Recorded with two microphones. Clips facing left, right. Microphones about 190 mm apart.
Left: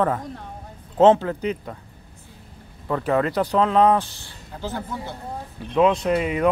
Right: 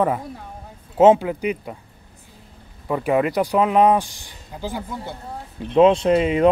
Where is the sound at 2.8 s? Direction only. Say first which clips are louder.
Right 2 dB; 10° right (ahead or behind).